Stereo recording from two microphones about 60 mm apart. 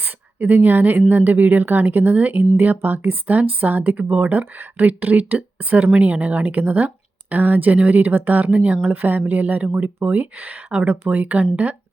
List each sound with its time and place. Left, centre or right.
0.0 s a woman's voice: right